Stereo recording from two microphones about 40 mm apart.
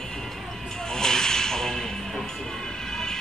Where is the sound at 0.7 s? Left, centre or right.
Centre.